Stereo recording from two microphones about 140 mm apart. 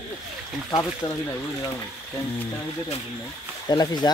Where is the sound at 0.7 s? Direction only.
30° left (ahead or behind).